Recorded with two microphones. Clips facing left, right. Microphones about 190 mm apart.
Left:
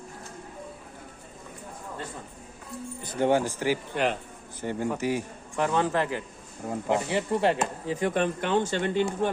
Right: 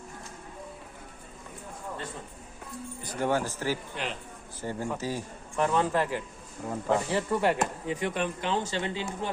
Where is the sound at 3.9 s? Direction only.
55° left (ahead or behind).